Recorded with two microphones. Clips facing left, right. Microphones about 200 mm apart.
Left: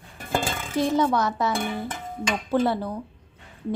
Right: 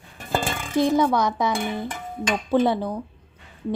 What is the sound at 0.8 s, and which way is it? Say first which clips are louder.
A woman's voice: right 2 dB; 15° right (ahead or behind).